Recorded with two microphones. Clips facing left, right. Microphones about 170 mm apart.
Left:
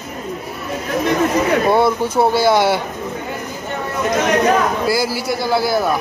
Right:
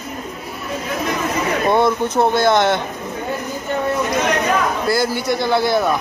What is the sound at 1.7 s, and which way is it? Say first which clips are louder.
A man's voice: left 1 dB; 10° left (ahead or behind).